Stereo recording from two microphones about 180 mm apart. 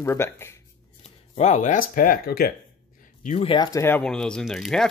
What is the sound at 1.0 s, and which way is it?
Speech, 40° left (ahead or behind).